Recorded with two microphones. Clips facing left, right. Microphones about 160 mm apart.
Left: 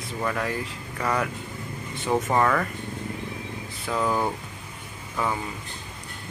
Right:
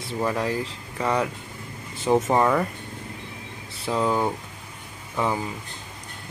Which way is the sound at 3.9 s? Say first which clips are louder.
Right 2 dB; 20° right (ahead or behind).